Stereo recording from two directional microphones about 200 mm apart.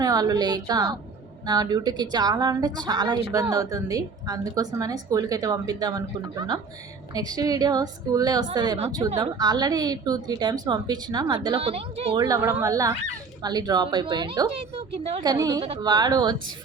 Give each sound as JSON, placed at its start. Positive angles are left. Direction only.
{"t": 0.0, "sound": "a woman's voice", "side_deg": -20}
{"t": 12.2, "sound": "a woman's voice", "side_deg": -15}
{"t": 15.2, "sound": "a woman's voice", "side_deg": -20}